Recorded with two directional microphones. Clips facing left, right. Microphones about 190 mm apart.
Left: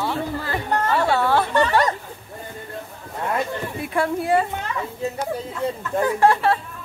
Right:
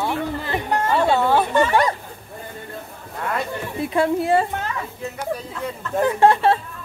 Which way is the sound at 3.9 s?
25° right (ahead or behind).